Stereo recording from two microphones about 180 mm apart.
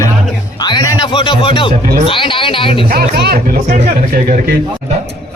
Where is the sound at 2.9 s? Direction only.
60° right (ahead or behind).